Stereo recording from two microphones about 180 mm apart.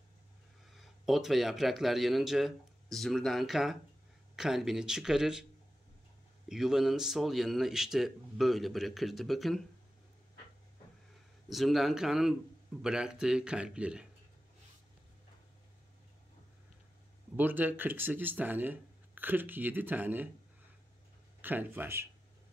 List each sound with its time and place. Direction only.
0.7 s speech: centre (ahead or behind)
6.5 s speech: centre (ahead or behind)
11.4 s speech: centre (ahead or behind)
17.4 s speech: 10° right (ahead or behind)
21.4 s speech: 10° right (ahead or behind)